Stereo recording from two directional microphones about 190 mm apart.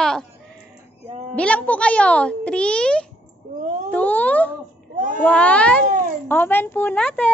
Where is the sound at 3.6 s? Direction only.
40° right (ahead or behind).